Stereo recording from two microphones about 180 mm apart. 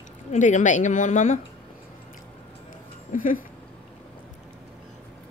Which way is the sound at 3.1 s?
50° left (ahead or behind).